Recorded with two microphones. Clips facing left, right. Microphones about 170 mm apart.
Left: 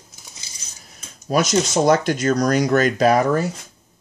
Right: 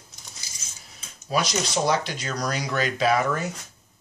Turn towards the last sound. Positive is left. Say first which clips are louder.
# left 6 dB
turn(degrees=40)  # may be behind; listen again after turning